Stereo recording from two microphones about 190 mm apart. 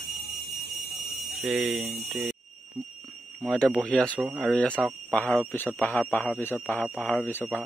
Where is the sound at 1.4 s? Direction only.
Centre (ahead or behind).